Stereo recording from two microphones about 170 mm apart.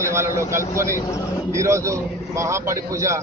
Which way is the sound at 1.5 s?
15° right (ahead or behind).